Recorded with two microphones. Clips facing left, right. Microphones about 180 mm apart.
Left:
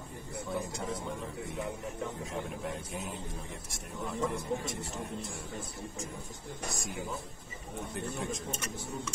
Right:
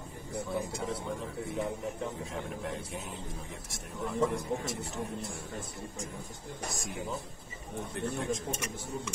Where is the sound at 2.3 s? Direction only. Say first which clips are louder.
Even; centre (ahead or behind).